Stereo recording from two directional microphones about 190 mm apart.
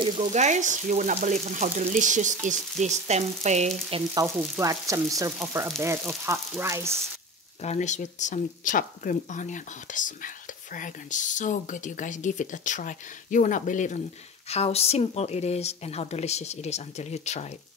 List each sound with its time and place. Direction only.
0.2 s frying: 40° right (ahead or behind)
4.1 s frying: 15° right (ahead or behind)
7.6 s speech: 35° left (ahead or behind)